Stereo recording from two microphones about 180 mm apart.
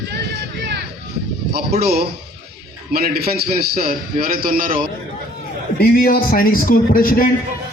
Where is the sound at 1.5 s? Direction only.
60° right (ahead or behind).